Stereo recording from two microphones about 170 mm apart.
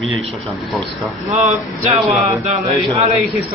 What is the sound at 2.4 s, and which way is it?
Speech, 40° right (ahead or behind).